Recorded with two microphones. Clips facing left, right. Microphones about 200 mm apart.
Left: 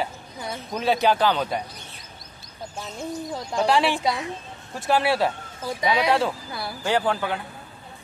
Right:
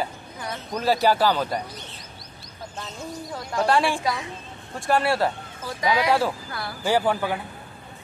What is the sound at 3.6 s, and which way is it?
Music, centre (ahead or behind).